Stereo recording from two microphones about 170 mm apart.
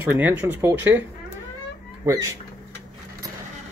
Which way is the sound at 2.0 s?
20° right (ahead or behind).